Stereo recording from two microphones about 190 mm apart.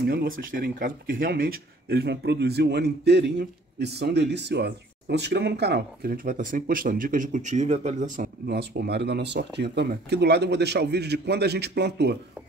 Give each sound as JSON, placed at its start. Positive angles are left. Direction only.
{"t": 0.0, "sound": "speech", "side_deg": -55}
{"t": 8.5, "sound": "speech", "side_deg": -60}